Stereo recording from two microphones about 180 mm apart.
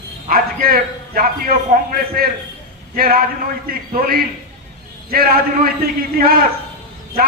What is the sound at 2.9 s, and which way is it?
Speech, 55° right (ahead or behind).